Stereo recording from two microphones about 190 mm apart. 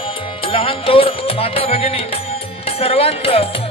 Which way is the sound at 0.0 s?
30° left (ahead or behind).